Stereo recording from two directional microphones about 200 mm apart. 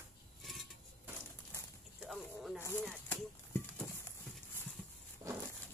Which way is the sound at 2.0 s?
Centre (ahead or behind).